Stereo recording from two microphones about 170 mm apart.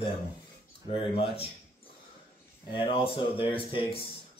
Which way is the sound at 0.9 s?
35° left (ahead or behind).